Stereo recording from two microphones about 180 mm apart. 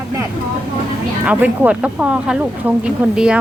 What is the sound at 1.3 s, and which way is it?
Speech, 10° right (ahead or behind).